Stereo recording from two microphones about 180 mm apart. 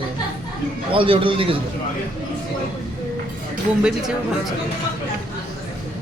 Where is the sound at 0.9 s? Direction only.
30° right (ahead or behind).